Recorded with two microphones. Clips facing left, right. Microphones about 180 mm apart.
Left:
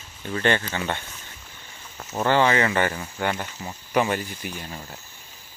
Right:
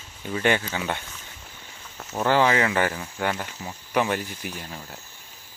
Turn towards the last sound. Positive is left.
turn(degrees=0)  # may be behind; listen again after turning